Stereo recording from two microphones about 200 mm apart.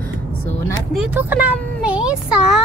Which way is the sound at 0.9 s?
5° right (ahead or behind).